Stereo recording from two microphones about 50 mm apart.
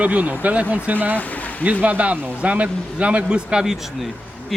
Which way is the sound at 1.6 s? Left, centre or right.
Right.